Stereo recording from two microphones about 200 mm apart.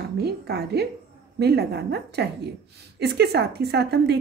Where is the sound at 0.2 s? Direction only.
55° right (ahead or behind).